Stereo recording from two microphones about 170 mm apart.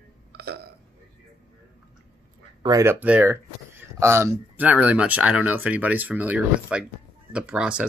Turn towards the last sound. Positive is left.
turn(degrees=-5)  # may be behind; listen again after turning